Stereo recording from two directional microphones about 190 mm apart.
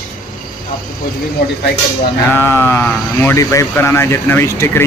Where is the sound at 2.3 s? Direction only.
10° left (ahead or behind).